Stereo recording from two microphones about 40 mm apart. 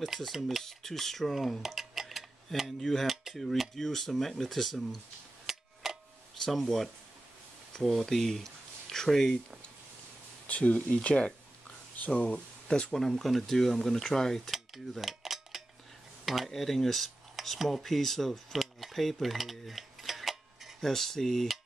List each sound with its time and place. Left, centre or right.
0.3 s speech: centre
2.8 s cutlery: centre
3.7 s speech: centre
5.5 s a sound: centre
6.4 s cutlery: centre
7.8 s speech: centre
10.4 s speech: left
12.6 s speech: left
12.9 s speech: centre
14.1 s cutlery: centre
16.4 s speech: centre
20.8 s speech: centre